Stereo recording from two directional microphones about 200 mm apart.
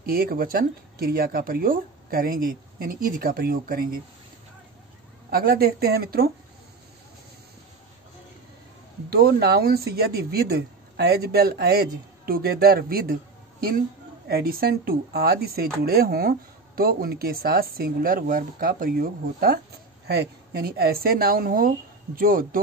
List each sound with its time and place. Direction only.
0.0 s speech: 50° right (ahead or behind)
5.3 s speech: 50° right (ahead or behind)
9.1 s speech: 50° right (ahead or behind)